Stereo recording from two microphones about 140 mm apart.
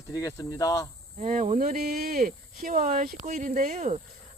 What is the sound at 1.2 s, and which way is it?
Speech, 60° right (ahead or behind).